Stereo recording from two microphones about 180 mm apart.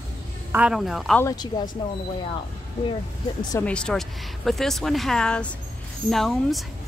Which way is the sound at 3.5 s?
5° left (ahead or behind).